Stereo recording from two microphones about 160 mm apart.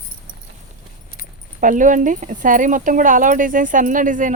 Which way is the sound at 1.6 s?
55° right (ahead or behind).